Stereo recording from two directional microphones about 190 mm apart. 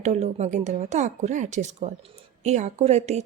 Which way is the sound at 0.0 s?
35° right (ahead or behind).